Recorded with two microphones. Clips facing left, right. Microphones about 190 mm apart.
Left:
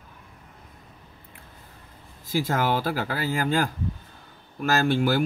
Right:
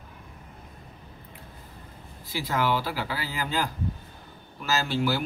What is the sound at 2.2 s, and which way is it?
Speech, 45° left (ahead or behind).